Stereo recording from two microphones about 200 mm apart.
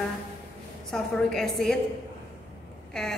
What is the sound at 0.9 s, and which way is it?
Speech, centre (ahead or behind).